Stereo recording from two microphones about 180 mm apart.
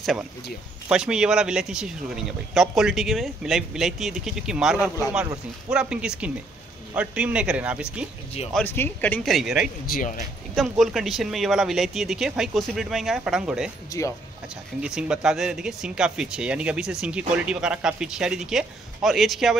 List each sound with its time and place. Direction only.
0.8 s speech: 5° right (ahead or behind)
8.5 s speech: 10° left (ahead or behind)
9.8 s a man's voice: 50° left (ahead or behind)
10.5 s speech: centre (ahead or behind)
13.8 s speech: 15° left (ahead or behind)
14.8 s speech: 5° right (ahead or behind)